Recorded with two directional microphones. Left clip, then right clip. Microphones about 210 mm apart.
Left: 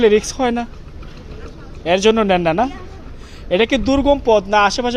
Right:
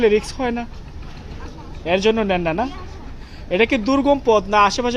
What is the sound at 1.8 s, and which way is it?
Speech, 25° left (ahead or behind).